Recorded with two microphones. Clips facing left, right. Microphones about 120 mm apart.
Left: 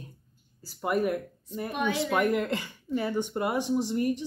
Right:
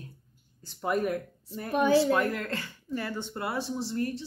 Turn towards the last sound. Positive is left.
turn(degrees=15)  # may be behind; listen again after turning